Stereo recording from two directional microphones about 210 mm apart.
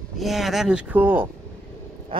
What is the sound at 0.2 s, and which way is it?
Speech, centre (ahead or behind).